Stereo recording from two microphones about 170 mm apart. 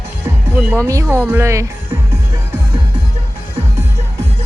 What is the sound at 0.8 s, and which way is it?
Speech, 15° right (ahead or behind).